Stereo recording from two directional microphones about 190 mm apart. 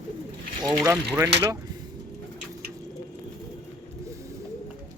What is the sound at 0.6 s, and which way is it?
Speech, 20° right (ahead or behind).